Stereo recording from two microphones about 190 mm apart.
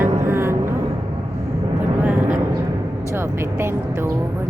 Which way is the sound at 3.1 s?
15° right (ahead or behind).